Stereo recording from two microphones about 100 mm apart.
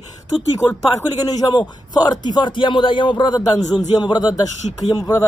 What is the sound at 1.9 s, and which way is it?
A man's voice, 40° left (ahead or behind).